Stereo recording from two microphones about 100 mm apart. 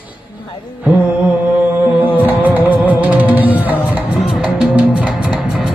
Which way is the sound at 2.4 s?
15° right (ahead or behind).